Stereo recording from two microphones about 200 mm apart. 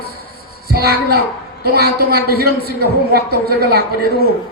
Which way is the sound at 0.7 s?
50° right (ahead or behind).